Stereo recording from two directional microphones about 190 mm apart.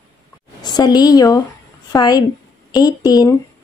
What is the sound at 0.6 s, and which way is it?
A woman's voice, 20° left (ahead or behind).